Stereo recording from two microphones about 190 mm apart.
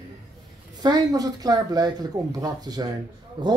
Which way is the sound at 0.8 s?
20° right (ahead or behind).